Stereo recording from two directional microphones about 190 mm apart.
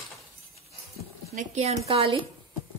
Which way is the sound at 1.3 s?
40° right (ahead or behind).